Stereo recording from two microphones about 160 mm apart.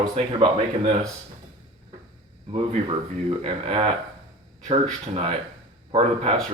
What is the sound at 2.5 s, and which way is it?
Speech, 40° right (ahead or behind).